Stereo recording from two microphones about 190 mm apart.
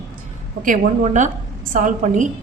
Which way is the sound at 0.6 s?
45° right (ahead or behind).